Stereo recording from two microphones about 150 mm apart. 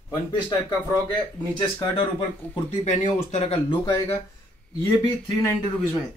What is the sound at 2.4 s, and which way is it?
Speech, 10° left (ahead or behind).